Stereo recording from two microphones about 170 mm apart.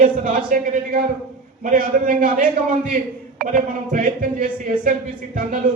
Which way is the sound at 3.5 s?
55° right (ahead or behind).